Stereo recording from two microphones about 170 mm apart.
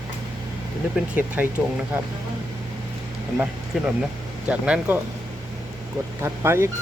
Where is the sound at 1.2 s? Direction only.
10° right (ahead or behind).